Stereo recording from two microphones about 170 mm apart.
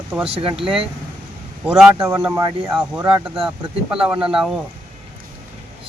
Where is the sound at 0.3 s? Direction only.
35° right (ahead or behind).